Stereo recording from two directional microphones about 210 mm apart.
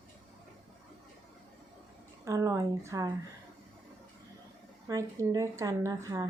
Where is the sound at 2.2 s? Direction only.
15° right (ahead or behind).